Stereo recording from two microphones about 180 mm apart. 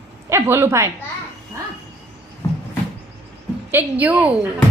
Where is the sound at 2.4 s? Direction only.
20° left (ahead or behind).